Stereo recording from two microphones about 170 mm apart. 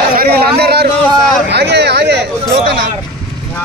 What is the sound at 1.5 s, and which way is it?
Speech, 80° right.